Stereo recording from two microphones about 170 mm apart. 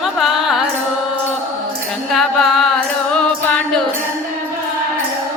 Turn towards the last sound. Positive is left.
turn(degrees=5)  # may be behind; listen again after turning